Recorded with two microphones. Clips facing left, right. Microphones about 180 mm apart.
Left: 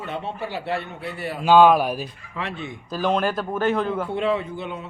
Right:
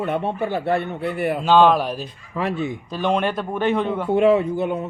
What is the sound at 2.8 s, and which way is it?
Speech, 5° left (ahead or behind).